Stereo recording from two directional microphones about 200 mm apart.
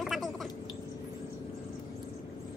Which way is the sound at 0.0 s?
Centre (ahead or behind).